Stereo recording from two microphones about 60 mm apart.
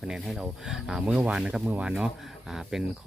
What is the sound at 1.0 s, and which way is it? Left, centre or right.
Speech, right.